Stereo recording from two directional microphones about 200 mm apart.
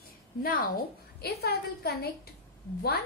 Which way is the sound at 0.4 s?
45° left (ahead or behind).